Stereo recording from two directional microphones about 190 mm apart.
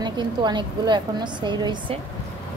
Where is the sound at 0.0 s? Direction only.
25° right (ahead or behind).